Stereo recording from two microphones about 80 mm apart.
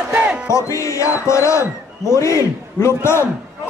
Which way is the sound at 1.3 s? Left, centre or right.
Left.